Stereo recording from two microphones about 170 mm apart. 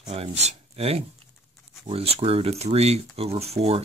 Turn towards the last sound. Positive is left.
turn(degrees=-35)  # may be behind; listen again after turning